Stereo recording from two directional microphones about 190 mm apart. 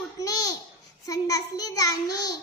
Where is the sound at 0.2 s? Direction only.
20° left (ahead or behind).